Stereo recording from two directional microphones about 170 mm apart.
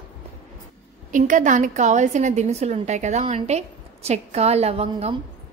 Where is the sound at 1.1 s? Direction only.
50° right (ahead or behind).